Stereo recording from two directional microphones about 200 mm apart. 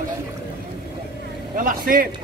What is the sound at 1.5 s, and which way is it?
Speech, 40° right (ahead or behind).